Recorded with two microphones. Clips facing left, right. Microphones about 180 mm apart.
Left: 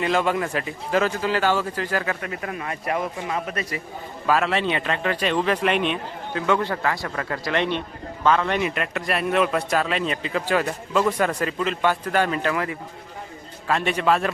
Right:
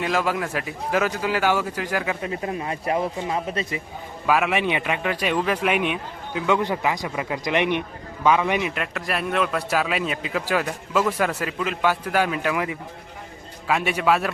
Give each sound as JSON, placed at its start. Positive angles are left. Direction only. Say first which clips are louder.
{"t": 0.0, "sound": "a man's voice", "louder": "left 2 dB", "side_deg": -5}
{"t": 2.2, "sound": "speech", "louder": "right 3 dB", "side_deg": -25}
{"t": 4.3, "sound": "a man's voice", "louder": "even", "side_deg": -10}